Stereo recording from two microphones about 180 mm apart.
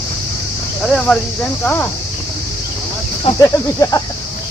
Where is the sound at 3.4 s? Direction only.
20° left (ahead or behind).